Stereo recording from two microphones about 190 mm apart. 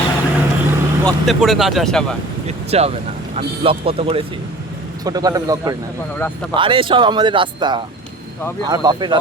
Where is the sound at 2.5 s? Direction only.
35° right (ahead or behind).